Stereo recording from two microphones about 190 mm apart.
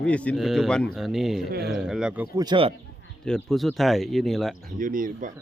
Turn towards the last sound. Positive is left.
turn(degrees=-45)  # may be behind; listen again after turning